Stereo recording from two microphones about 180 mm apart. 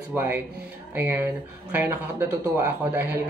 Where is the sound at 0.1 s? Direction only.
10° right (ahead or behind).